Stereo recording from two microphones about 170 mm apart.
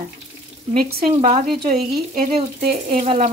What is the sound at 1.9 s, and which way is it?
Speech, 55° right (ahead or behind).